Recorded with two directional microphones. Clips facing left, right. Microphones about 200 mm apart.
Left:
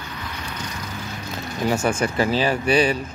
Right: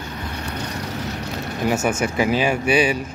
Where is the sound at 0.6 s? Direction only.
65° right (ahead or behind).